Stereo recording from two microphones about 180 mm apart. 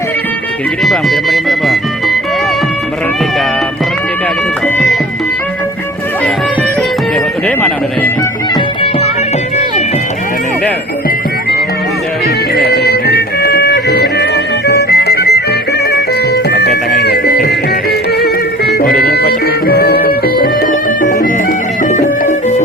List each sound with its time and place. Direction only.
0.9 s speech: centre (ahead or behind)
7.4 s speech: 10° left (ahead or behind)
12.5 s music: 65° left (ahead or behind)
22.3 s music: 40° left (ahead or behind)